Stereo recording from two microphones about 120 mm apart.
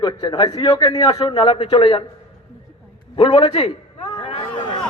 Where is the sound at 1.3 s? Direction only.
50° left (ahead or behind).